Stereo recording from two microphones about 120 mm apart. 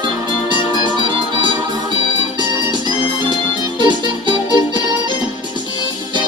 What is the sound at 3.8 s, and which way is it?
Music, 40° right (ahead or behind).